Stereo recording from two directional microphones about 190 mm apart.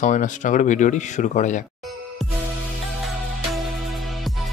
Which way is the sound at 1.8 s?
Centre (ahead or behind).